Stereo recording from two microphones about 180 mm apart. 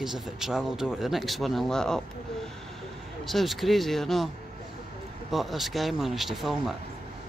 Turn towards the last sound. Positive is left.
turn(degrees=0)  # may be behind; listen again after turning